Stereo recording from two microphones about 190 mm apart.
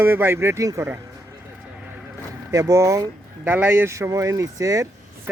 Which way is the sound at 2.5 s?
15° right (ahead or behind).